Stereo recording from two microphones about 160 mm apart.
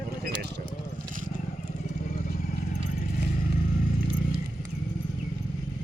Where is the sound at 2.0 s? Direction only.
55° left (ahead or behind).